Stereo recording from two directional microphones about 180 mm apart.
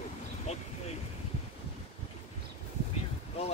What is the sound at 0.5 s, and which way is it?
Speech, 40° left (ahead or behind).